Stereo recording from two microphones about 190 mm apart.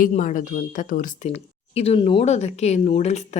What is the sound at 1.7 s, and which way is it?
Speech, 30° left (ahead or behind).